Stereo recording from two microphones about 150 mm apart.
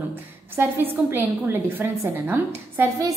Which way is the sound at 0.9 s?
15° right (ahead or behind).